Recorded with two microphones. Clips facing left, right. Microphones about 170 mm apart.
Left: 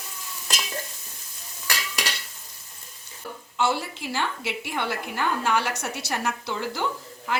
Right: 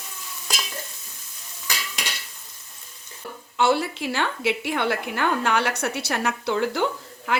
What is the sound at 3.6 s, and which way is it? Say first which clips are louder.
A woman's voice: right 5 dB; 65° right (ahead or behind).